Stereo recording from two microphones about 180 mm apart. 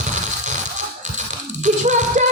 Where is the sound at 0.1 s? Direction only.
40° right (ahead or behind).